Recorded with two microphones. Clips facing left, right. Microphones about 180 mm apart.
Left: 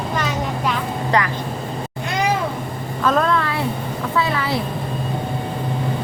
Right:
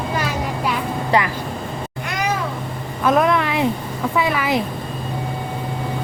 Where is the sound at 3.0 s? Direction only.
15° right (ahead or behind).